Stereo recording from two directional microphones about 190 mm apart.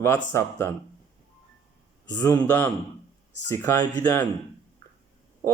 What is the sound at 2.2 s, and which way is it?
Speech, 15° left (ahead or behind).